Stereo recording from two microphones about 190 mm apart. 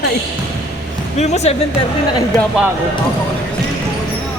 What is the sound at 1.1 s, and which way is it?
Speech, 35° left (ahead or behind).